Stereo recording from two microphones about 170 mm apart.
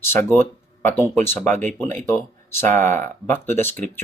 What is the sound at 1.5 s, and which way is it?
Speech, 45° right (ahead or behind).